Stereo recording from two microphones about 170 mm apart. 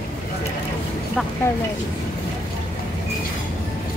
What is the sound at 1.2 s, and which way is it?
Speech, centre (ahead or behind).